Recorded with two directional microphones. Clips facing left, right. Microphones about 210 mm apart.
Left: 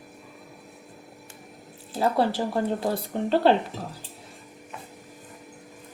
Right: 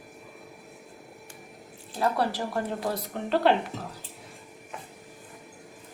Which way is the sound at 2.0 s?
30° left (ahead or behind).